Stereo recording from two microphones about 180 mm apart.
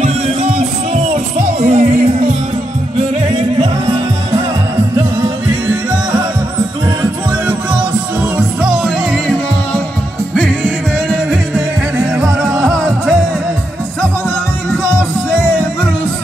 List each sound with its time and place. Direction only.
1.7 s music: 45° right (ahead or behind)
8.4 s music: 5° right (ahead or behind)
12.2 s music: centre (ahead or behind)